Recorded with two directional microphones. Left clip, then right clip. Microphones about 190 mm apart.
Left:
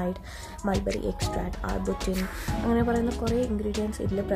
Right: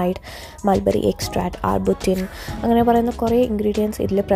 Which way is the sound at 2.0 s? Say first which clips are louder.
Right 10 dB; centre (ahead or behind).